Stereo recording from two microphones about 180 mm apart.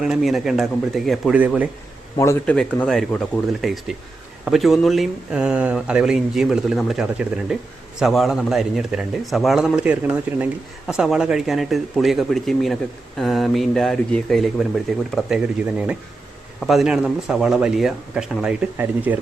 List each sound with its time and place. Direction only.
0.0 s speech: centre (ahead or behind)
2.1 s speech: 15° left (ahead or behind)
2.6 s speech: 5° left (ahead or behind)
16.6 s speech: centre (ahead or behind)